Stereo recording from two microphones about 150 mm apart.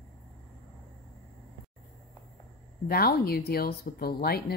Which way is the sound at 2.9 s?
90° left.